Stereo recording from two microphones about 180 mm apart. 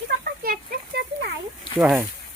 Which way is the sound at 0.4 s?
55° right (ahead or behind).